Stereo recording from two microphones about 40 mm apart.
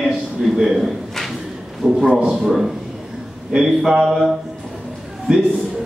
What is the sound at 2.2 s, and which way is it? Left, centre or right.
A man's voice, centre.